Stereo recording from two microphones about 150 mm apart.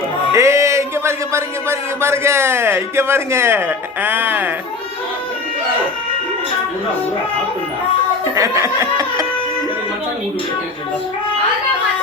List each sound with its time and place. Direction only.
0.3 s speech: 20° right (ahead or behind)
8.4 s snicker: 20° right (ahead or behind)